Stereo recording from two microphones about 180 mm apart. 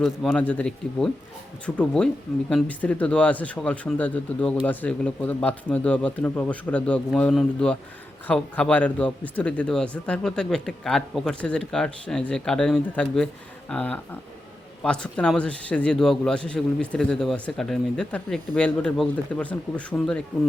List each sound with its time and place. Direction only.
0.0 s a man's voice: centre (ahead or behind)